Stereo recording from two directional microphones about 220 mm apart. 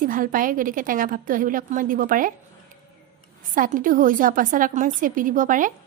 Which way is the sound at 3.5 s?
40° right (ahead or behind).